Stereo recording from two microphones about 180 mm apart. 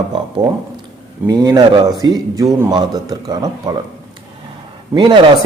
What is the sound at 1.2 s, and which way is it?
A man's voice, 20° right (ahead or behind).